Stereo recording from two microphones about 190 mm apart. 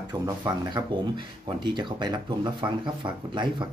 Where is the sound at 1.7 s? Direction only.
25° right (ahead or behind).